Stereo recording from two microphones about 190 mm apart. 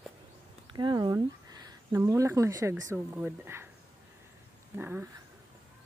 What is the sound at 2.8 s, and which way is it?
Speech, 15° right (ahead or behind).